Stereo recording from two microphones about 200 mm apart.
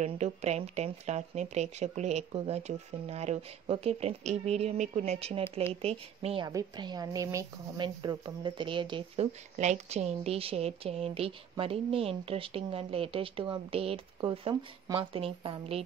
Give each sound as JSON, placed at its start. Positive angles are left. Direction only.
{"t": 0.0, "sound": "a woman's voice", "side_deg": -35}